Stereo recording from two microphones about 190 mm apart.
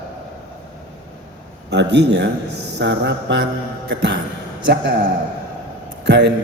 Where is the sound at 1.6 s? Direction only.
65° right (ahead or behind).